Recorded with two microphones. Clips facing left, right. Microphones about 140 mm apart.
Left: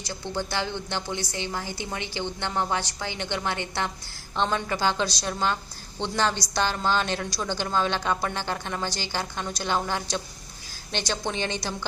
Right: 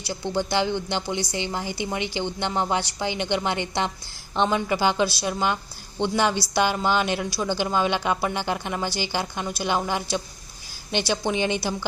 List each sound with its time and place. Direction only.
0.0 s a woman's voice: 15° right (ahead or behind)